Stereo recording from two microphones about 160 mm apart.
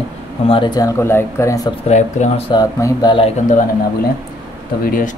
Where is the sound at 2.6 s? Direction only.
25° left (ahead or behind).